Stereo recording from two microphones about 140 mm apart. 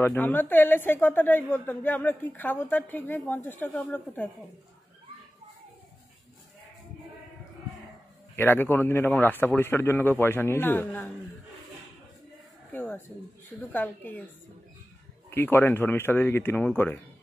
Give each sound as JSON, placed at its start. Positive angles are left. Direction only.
{"t": 0.0, "sound": "a woman's voice", "side_deg": 15}
{"t": 8.4, "sound": "a woman's voice", "side_deg": 15}
{"t": 12.7, "sound": "a sound", "side_deg": 15}
{"t": 13.7, "sound": "a woman's voice", "side_deg": 10}
{"t": 15.2, "sound": "a woman's voice", "side_deg": 15}